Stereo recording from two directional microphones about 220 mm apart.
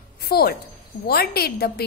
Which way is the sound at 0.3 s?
45° left (ahead or behind).